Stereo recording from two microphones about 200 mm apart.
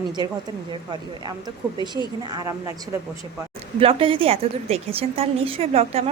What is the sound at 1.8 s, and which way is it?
Speech, 20° left (ahead or behind).